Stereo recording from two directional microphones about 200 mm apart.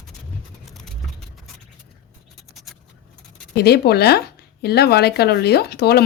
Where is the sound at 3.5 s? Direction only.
55° left (ahead or behind).